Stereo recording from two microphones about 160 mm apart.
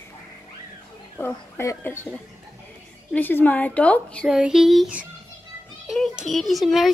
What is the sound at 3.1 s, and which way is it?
A woman's voice, 10° left (ahead or behind).